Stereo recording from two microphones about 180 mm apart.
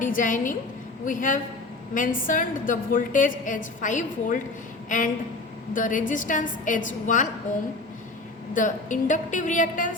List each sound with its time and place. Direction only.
0.0 s a woman's voice: 50° left (ahead or behind)
8.5 s a woman's voice: 45° left (ahead or behind)